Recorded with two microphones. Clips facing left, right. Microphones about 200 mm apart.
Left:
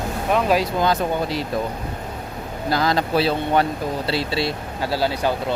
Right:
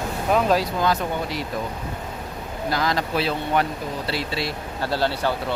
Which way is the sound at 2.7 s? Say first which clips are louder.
Left 4 dB; 35° left (ahead or behind).